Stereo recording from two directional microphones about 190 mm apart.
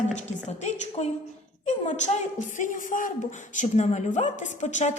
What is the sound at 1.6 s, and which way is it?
A woman's voice, 35° left (ahead or behind).